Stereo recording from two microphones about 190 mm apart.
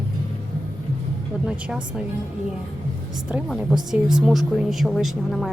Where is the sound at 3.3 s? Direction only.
5° right (ahead or behind).